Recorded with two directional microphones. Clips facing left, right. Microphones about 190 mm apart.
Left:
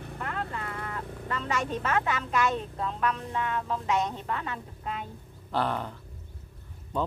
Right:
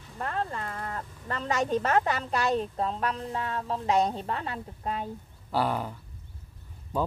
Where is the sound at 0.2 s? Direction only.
40° right (ahead or behind).